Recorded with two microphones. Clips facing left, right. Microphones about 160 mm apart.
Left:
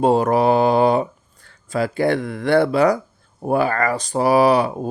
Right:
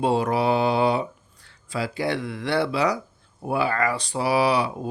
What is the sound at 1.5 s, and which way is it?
Speech, 50° left (ahead or behind).